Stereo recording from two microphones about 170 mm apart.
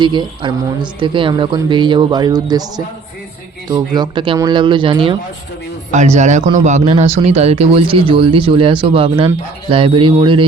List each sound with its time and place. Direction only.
0.0 s speech: 25° right (ahead or behind)
5.9 s speech: 45° right (ahead or behind)